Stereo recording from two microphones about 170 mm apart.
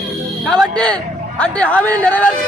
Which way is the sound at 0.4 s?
5° left (ahead or behind).